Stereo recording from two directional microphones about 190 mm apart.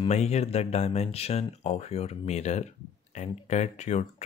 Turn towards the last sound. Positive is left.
turn(degrees=35)  # may be behind; listen again after turning